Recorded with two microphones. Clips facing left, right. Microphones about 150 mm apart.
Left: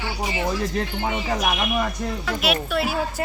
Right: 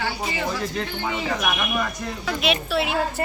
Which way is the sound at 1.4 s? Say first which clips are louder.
Left 2 dB; 25° left (ahead or behind).